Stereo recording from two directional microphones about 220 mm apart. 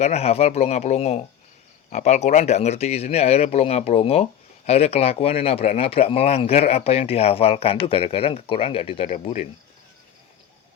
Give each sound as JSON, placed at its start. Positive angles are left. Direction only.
{"t": 0.0, "sound": "speech", "side_deg": 30}